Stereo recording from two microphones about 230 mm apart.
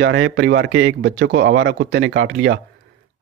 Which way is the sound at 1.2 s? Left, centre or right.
Right.